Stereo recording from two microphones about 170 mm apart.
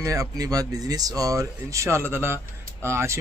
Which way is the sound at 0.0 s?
20° right (ahead or behind).